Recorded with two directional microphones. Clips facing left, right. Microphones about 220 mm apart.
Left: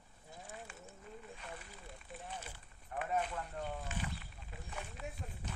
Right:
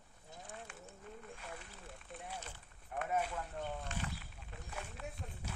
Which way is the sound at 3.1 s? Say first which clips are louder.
Even; 5° right (ahead or behind).